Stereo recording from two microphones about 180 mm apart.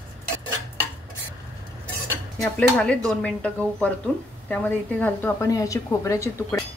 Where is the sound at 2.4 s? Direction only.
5° left (ahead or behind).